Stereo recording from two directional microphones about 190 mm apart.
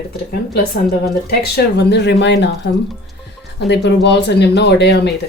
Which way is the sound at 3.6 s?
65° left (ahead or behind).